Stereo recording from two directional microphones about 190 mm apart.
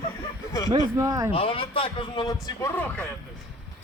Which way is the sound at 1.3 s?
30° left (ahead or behind).